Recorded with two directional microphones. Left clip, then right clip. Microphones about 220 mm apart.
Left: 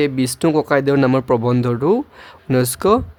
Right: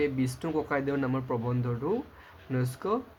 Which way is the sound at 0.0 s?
50° left (ahead or behind).